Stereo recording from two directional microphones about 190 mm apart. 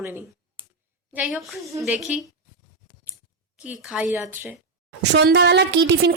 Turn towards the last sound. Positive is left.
turn(degrees=-65)  # may be behind; listen again after turning